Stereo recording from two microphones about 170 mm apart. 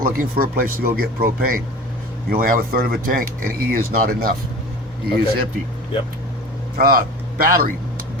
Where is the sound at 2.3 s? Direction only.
55° right (ahead or behind).